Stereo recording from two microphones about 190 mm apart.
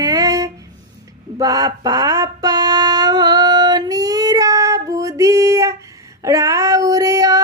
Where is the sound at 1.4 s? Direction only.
20° right (ahead or behind).